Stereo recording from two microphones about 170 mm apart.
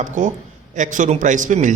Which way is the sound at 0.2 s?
50° right (ahead or behind).